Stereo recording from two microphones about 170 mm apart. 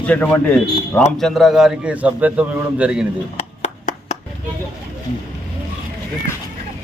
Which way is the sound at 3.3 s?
45° left (ahead or behind).